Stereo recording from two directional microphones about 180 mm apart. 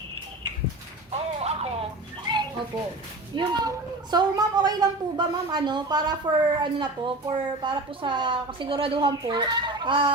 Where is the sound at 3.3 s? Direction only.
25° right (ahead or behind).